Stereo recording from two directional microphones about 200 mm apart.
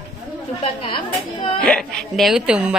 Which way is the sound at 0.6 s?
25° left (ahead or behind).